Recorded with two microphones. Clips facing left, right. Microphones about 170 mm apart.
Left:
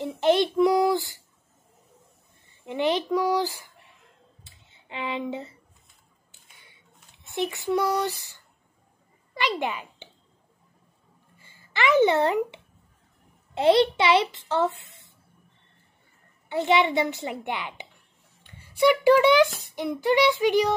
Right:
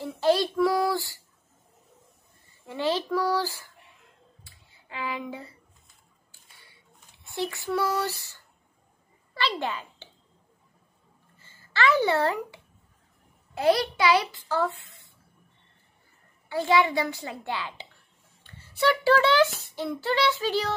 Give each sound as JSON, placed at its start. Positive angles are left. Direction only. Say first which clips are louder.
{"t": 0.0, "sound": "a child's voice", "louder": "left 2 dB", "side_deg": 20}
{"t": 2.6, "sound": "speech", "louder": "left 3 dB", "side_deg": 20}
{"t": 4.5, "sound": "a sound", "louder": "left 3 dB", "side_deg": 20}
{"t": 7.2, "sound": "a child's voice", "louder": "left 3 dB", "side_deg": 20}
{"t": 11.3, "sound": "speech", "louder": "right 1 dB", "side_deg": 15}
{"t": 13.6, "sound": "a child's voice", "louder": "left 4 dB", "side_deg": 25}
{"t": 14.9, "sound": "a sound", "louder": "left 1 dB", "side_deg": 20}
{"t": 16.4, "sound": "a child's voice", "louder": "left 1 dB", "side_deg": 20}